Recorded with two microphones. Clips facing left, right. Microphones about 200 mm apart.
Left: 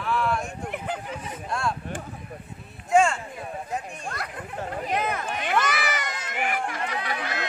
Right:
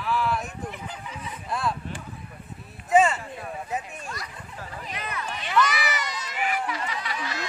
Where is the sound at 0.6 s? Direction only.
60° left (ahead or behind).